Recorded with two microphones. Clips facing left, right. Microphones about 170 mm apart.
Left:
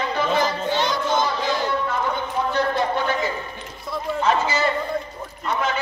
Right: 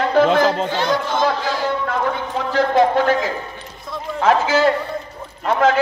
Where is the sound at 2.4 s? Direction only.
90° right.